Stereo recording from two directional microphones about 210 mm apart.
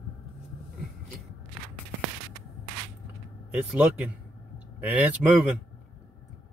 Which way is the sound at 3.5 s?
5° right (ahead or behind).